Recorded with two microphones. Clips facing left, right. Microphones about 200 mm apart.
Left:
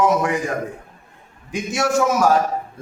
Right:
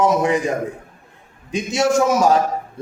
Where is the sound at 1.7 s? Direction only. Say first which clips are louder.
Right 2 dB; 20° right (ahead or behind).